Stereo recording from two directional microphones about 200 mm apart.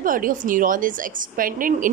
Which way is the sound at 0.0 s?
45° right (ahead or behind).